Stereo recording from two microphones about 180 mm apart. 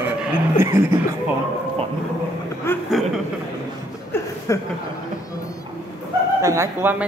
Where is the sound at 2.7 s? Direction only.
15° left (ahead or behind).